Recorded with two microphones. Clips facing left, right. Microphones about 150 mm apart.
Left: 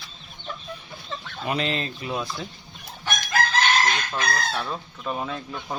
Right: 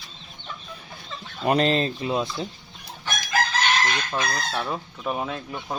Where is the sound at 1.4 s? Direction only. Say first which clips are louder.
Right 6 dB; 45° right (ahead or behind); by 2.3 s 25° right (ahead or behind).